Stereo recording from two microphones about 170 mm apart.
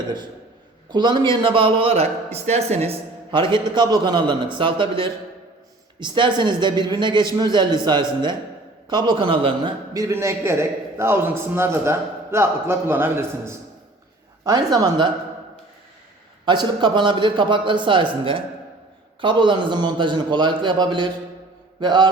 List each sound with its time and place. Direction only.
0.9 s a man's voice: 25° right (ahead or behind)
9.0 s a man's voice: 30° right (ahead or behind)
16.5 s a man's voice: 25° right (ahead or behind)